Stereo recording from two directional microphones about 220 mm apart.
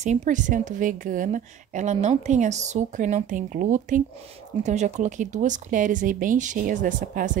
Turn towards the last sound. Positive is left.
turn(degrees=-35)  # may be behind; listen again after turning